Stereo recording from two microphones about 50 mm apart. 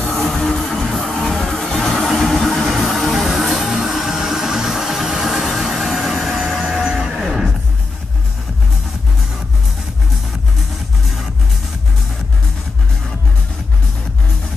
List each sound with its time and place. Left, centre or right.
0.0 s music: left
0.4 s music: centre
6.9 s music: centre